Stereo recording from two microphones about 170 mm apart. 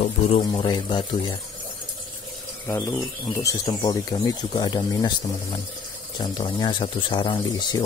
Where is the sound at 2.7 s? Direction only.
15° left (ahead or behind).